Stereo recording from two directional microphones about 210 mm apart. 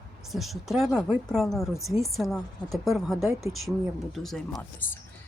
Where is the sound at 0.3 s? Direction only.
Centre (ahead or behind).